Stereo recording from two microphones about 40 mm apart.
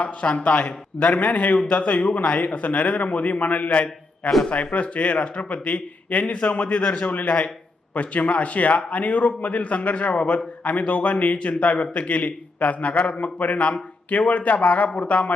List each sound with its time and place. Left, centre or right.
0.0 s a man's voice: left